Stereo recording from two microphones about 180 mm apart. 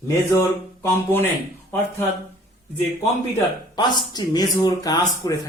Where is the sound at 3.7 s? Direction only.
25° left (ahead or behind).